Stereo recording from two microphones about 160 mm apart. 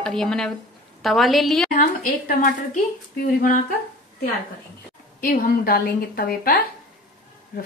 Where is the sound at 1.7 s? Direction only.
60° left (ahead or behind).